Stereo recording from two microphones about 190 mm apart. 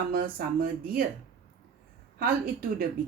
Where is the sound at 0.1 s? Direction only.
50° right (ahead or behind).